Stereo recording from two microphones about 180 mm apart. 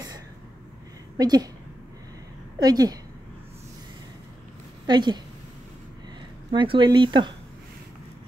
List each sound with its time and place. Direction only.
1.1 s a woman's voice: 20° right (ahead or behind)
2.6 s speech: 20° right (ahead or behind)
4.8 s a woman's voice: 25° right (ahead or behind)
6.5 s speech: 25° right (ahead or behind)